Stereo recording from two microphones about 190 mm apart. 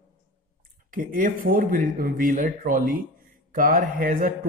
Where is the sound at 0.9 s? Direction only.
45° right (ahead or behind).